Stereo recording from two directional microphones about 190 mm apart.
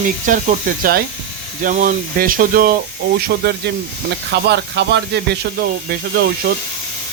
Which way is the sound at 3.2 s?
60° right (ahead or behind).